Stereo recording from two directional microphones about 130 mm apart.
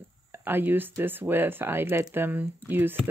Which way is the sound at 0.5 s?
15° right (ahead or behind).